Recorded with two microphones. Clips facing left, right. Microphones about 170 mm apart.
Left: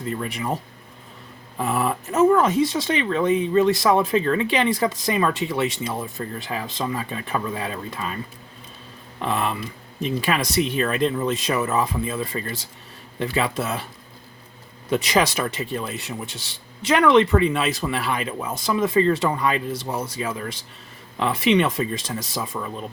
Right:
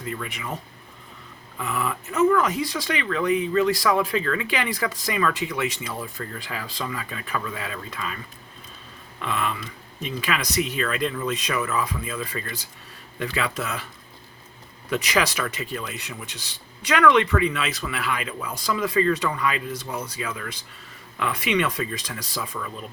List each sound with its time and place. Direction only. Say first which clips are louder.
0.0 s speech: left 5 dB; 35° left (ahead or behind)
1.5 s speech: left 5 dB; 35° left (ahead or behind)
14.8 s speech: left 3 dB; 30° left (ahead or behind)